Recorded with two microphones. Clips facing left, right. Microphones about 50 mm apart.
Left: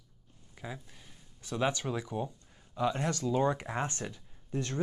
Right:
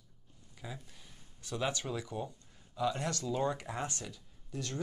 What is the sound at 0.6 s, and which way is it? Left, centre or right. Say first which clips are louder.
Speech: left 3 dB; centre.